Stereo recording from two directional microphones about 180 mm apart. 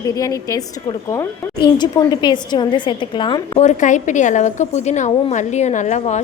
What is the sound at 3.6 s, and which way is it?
A woman's voice, 40° left (ahead or behind).